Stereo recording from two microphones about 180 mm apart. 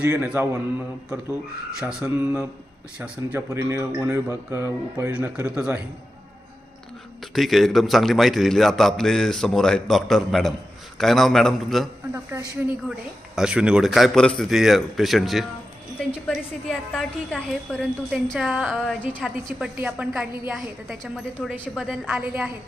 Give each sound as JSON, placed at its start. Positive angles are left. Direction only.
{"t": 0.0, "sound": "a woman's voice", "side_deg": -10}
{"t": 7.3, "sound": "a woman's voice", "side_deg": 0}
{"t": 13.3, "sound": "a woman's voice", "side_deg": -5}